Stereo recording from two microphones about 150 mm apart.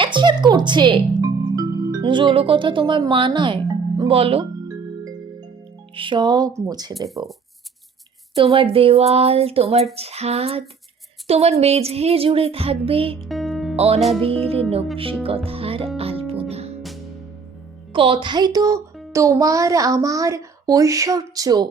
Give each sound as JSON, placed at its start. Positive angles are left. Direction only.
{"t": 0.0, "sound": "speech", "side_deg": -30}
{"t": 5.9, "sound": "a child's voice", "side_deg": -35}
{"t": 8.4, "sound": "speech", "side_deg": -40}
{"t": 11.3, "sound": "child singing", "side_deg": -45}
{"t": 13.1, "sound": "music", "side_deg": 0}
{"t": 13.7, "sound": "speech", "side_deg": -40}
{"t": 14.2, "sound": "child singing", "side_deg": -40}
{"t": 15.4, "sound": "music", "side_deg": -40}
{"t": 17.9, "sound": "a child's voice", "side_deg": -35}